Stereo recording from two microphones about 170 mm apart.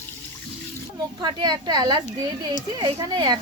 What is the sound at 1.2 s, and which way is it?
A woman's voice, 25° right (ahead or behind).